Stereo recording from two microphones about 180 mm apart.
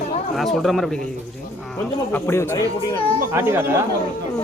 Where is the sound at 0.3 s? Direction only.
Centre (ahead or behind).